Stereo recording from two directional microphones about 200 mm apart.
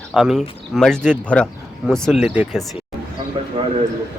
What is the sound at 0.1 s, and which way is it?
Speech, centre (ahead or behind).